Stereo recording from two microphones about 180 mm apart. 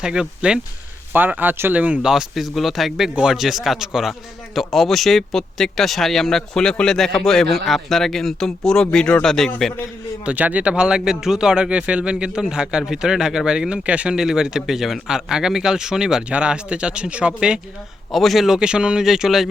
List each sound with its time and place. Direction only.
0.0 s speech: 5° right (ahead or behind)